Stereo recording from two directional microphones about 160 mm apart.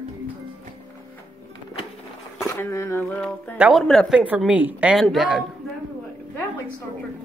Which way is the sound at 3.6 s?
Centre (ahead or behind).